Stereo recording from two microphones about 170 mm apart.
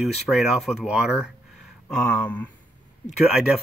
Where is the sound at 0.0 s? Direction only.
Centre (ahead or behind).